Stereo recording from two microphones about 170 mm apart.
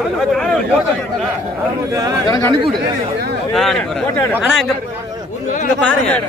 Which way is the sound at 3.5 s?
Centre (ahead or behind).